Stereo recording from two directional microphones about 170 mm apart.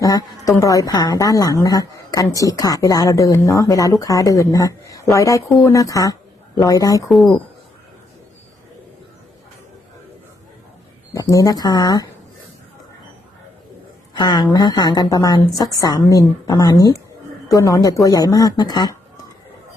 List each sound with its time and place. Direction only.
0.0 s speech: 20° left (ahead or behind)
7.1 s speech: centre (ahead or behind)
11.1 s speech: 20° left (ahead or behind)
14.2 s speech: 25° left (ahead or behind)